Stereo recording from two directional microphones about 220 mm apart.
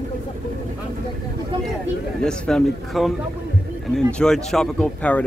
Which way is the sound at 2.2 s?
5° left (ahead or behind).